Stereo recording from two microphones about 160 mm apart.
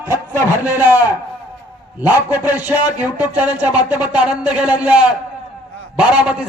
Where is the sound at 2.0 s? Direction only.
10° right (ahead or behind).